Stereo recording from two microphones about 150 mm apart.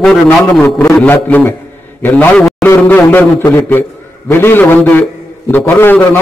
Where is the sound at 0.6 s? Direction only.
20° left (ahead or behind).